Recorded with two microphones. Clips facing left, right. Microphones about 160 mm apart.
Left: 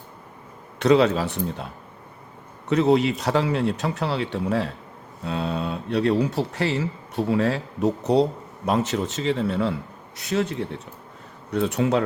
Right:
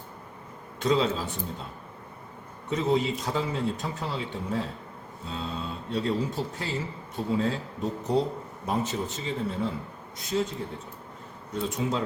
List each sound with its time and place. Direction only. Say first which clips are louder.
0.8 s speech: left 7 dB; 70° left (ahead or behind)
2.6 s speech: left 7 dB; 70° left (ahead or behind)